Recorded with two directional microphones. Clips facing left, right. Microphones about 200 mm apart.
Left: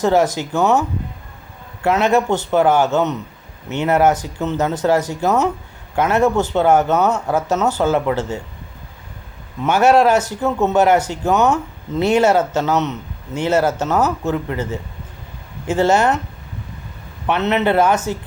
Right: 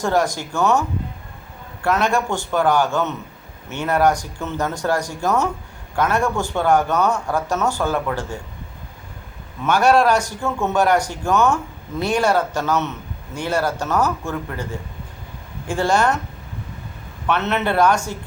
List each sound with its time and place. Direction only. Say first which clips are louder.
0.0 s speech: left 4 dB; 20° left (ahead or behind)
9.6 s speech: left 2 dB; 20° left (ahead or behind)
17.2 s speech: left 4 dB; 15° left (ahead or behind)